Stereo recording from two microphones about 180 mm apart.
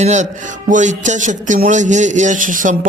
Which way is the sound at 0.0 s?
40° right (ahead or behind).